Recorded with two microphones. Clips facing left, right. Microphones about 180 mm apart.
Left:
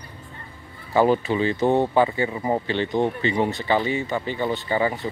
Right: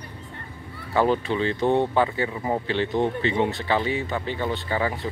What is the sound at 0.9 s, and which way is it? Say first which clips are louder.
Speech: left 3 dB; 5° left (ahead or behind).